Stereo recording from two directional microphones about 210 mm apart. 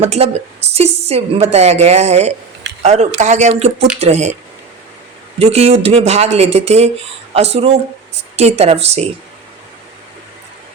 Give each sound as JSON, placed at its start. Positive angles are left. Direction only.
{"t": 0.0, "sound": "speech", "side_deg": -30}
{"t": 5.4, "sound": "speech", "side_deg": -30}